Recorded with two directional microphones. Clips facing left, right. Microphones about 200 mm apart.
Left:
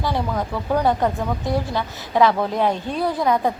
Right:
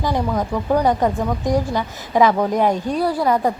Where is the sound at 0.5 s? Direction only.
15° right (ahead or behind).